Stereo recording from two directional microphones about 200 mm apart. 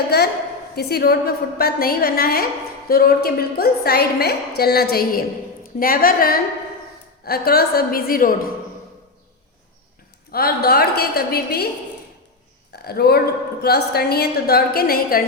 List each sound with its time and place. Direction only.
0.8 s a woman's voice: 50° left (ahead or behind)
10.3 s a woman's voice: 50° left (ahead or behind)
12.7 s a woman's voice: 50° left (ahead or behind)